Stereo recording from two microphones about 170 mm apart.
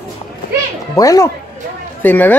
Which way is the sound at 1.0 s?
20° left (ahead or behind).